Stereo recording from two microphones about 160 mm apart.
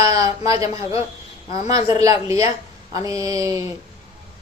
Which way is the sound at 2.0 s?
40° left (ahead or behind).